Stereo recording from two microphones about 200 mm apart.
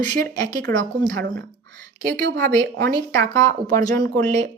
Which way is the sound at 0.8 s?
65° right (ahead or behind).